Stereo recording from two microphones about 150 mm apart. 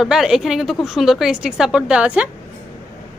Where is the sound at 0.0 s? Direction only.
5° right (ahead or behind).